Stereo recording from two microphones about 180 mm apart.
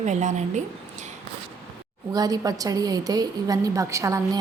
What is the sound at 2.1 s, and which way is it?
A woman's voice, 20° right (ahead or behind).